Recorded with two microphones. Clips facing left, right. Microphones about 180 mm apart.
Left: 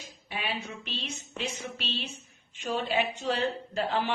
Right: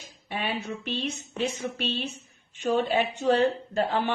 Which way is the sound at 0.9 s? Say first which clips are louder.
Right 8 dB; 55° right (ahead or behind).